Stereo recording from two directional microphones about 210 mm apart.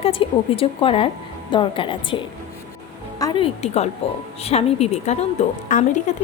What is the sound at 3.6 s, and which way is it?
Speech, 30° left (ahead or behind).